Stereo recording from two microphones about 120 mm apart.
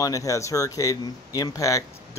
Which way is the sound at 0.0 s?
30° left (ahead or behind).